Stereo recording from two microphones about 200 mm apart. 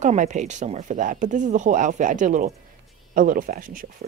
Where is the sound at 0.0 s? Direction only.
40° right (ahead or behind).